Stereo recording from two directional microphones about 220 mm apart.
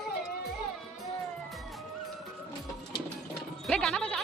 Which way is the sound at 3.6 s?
Centre (ahead or behind).